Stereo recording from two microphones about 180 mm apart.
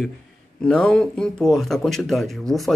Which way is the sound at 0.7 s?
5° left (ahead or behind).